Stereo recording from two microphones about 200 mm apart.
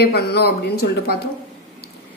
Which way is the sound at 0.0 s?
55° left (ahead or behind).